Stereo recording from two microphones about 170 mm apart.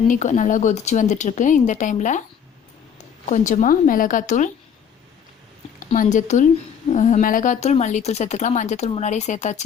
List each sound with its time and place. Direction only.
0.1 s a woman's voice: 45° left (ahead or behind)
3.2 s a woman's voice: 45° left (ahead or behind)
5.8 s a woman's voice: 50° left (ahead or behind)